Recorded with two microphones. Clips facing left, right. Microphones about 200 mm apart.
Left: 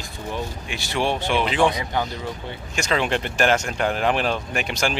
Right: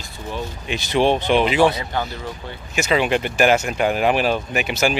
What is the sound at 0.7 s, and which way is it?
Speech, 20° right (ahead or behind).